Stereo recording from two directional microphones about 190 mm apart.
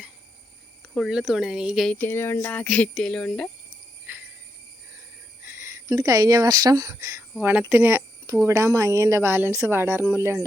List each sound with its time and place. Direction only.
0.9 s speech: centre (ahead or behind)
4.1 s cricket: 10° right (ahead or behind)
5.5 s speech: 15° right (ahead or behind)